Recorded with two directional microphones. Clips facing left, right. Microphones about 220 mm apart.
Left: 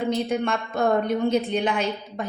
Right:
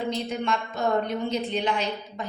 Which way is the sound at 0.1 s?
55° left (ahead or behind).